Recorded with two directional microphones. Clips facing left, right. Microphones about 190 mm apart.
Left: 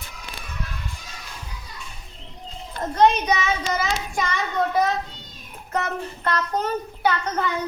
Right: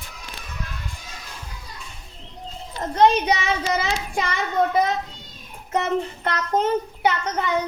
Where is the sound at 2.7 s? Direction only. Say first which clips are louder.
Even; 55° left (ahead or behind).